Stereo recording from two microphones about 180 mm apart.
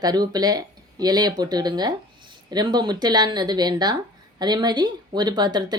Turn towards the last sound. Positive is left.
turn(degrees=-25)  # may be behind; listen again after turning